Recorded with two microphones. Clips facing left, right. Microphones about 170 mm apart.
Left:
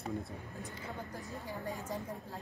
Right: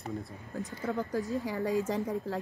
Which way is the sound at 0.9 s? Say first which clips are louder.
Right 15 dB; 90° right.